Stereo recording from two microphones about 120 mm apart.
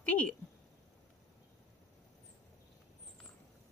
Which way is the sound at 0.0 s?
10° left (ahead or behind).